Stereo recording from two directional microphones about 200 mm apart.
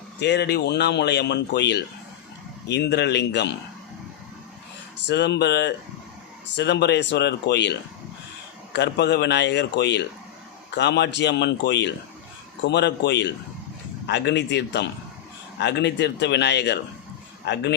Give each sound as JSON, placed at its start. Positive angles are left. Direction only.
{"t": 0.2, "sound": "speech", "side_deg": 60}
{"t": 5.0, "sound": "speech", "side_deg": 60}